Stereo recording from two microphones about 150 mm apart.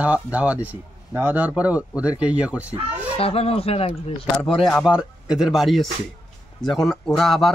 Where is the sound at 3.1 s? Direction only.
40° left (ahead or behind).